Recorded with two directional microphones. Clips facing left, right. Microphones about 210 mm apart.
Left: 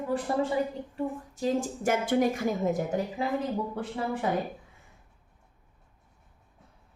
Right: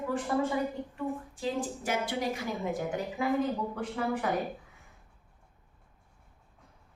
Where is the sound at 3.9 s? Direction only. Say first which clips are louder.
Left 1 dB; 25° left (ahead or behind).